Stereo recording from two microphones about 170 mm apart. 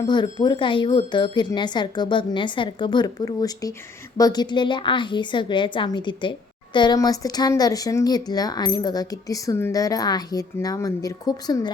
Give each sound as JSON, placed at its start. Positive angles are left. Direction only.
{"t": 0.0, "sound": "speech", "side_deg": 25}